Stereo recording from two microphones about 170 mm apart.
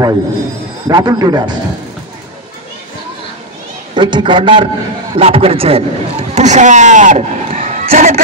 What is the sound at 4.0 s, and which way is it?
A man's voice, 25° right (ahead or behind).